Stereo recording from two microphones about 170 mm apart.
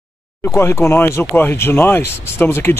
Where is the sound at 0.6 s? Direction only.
15° left (ahead or behind).